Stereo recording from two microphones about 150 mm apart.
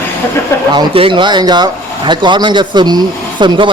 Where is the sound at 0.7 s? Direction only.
30° right (ahead or behind).